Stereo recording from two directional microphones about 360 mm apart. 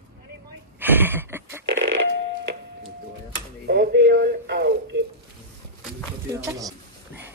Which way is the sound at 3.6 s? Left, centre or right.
Right.